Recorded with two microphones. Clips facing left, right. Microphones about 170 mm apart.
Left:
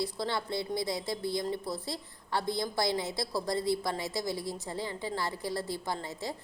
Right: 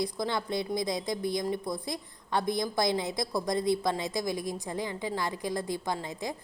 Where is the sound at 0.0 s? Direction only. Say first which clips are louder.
Right 2 dB; 15° right (ahead or behind).